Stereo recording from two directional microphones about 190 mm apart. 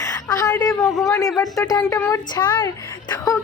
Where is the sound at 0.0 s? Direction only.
20° left (ahead or behind).